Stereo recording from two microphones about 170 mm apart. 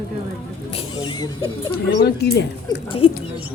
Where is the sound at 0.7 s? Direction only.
30° left (ahead or behind).